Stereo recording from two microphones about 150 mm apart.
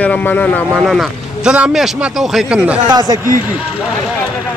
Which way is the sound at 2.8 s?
25° right (ahead or behind).